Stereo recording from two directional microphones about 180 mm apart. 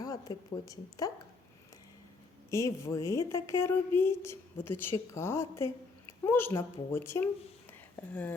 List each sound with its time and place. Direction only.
0.0 s speech: 20° left (ahead or behind)
2.5 s a woman's voice: 15° left (ahead or behind)
7.7 s a sound: 10° left (ahead or behind)